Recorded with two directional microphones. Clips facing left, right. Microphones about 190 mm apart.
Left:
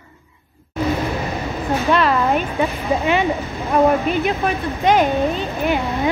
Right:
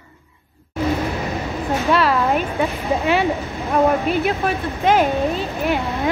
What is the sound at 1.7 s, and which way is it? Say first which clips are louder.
Speech: left 1 dB; centre (ahead or behind).